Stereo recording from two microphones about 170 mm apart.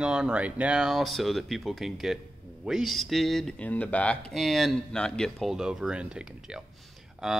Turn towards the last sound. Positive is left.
turn(degrees=0)  # may be behind; listen again after turning